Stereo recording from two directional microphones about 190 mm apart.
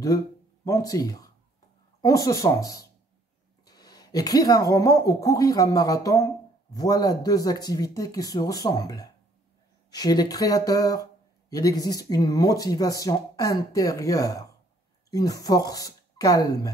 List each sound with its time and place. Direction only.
0.7 s speech: 20° left (ahead or behind)